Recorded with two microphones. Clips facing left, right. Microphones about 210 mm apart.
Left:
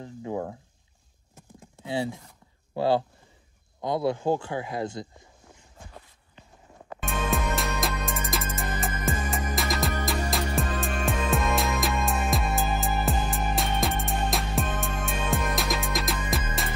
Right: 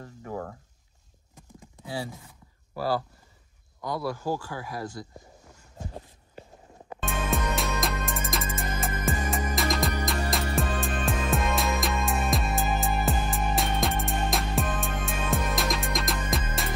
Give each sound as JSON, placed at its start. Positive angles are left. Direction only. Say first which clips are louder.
{"t": 0.0, "sound": "a sound", "louder": "left 4 dB", "side_deg": 20}
{"t": 2.7, "sound": "speech", "louder": "left 5 dB", "side_deg": 25}
{"t": 7.1, "sound": "music", "louder": "left 1 dB", "side_deg": 0}